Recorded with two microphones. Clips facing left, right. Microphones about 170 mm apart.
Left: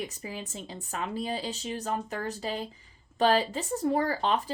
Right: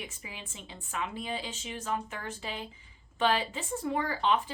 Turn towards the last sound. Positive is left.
turn(degrees=40)  # may be behind; listen again after turning